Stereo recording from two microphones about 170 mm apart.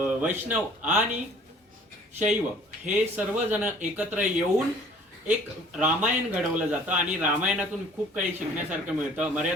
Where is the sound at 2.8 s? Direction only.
10° right (ahead or behind).